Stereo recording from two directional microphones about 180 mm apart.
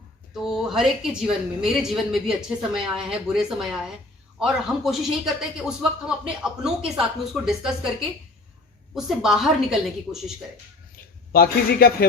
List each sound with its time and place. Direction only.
0.4 s a woman's voice: 5° right (ahead or behind)
9.0 s a woman's voice: centre (ahead or behind)
11.3 s a man's voice: 60° left (ahead or behind)